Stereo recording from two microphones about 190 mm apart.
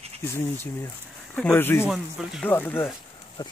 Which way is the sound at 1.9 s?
Centre (ahead or behind).